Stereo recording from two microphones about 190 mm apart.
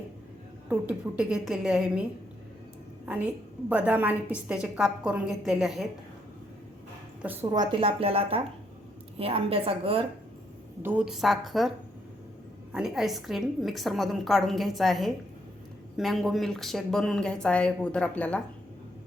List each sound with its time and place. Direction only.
0.7 s speech: 5° right (ahead or behind)
3.1 s a woman's voice: 5° right (ahead or behind)
7.5 s a woman's voice: 25° right (ahead or behind)
10.8 s speech: 5° right (ahead or behind)
12.7 s speech: centre (ahead or behind)